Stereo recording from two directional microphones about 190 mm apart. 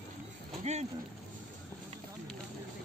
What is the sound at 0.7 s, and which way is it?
Speech, 35° right (ahead or behind).